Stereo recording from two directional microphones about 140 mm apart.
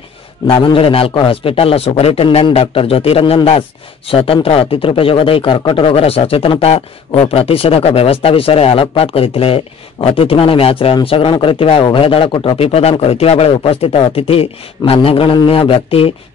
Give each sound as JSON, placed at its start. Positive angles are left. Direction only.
{"t": 0.5, "sound": "speech", "side_deg": 40}